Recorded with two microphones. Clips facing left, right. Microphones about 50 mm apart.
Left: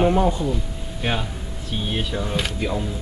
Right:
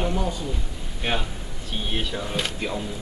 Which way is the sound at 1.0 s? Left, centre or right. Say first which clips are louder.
Left 2 dB; centre.